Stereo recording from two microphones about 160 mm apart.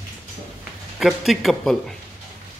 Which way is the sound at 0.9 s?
Centre (ahead or behind).